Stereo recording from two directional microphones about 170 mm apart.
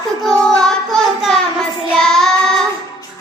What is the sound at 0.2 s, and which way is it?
Child singing, centre (ahead or behind).